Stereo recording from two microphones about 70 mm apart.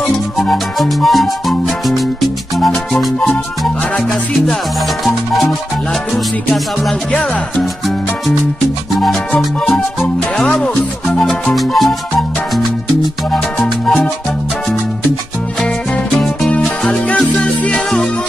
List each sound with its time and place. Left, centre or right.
0.4 s speech: centre
7.1 s music: centre
9.4 s speech: centre
13.6 s speech: centre
17.1 s music: centre